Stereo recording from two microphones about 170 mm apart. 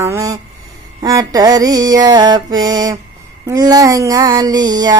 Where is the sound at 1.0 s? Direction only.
20° right (ahead or behind).